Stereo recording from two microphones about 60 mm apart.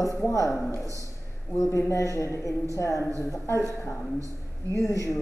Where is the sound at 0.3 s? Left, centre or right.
Left.